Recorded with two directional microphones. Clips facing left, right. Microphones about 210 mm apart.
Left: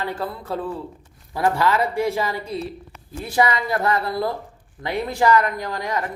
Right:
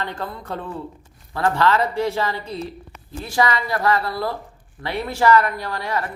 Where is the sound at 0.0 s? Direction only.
5° left (ahead or behind).